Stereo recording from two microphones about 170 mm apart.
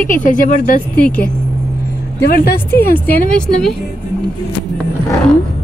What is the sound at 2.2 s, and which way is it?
Speech, 70° left (ahead or behind).